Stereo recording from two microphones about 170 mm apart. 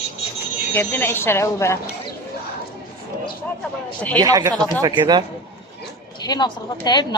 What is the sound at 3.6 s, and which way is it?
Speech, 10° left (ahead or behind).